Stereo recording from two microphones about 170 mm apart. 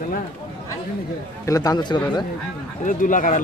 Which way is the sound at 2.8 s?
50° left (ahead or behind).